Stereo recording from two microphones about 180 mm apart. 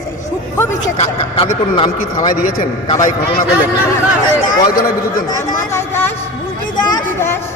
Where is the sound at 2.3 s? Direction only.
50° left (ahead or behind).